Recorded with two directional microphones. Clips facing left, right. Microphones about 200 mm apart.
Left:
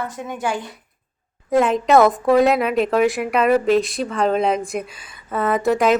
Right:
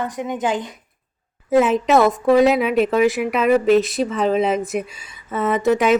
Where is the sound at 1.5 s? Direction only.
5° right (ahead or behind).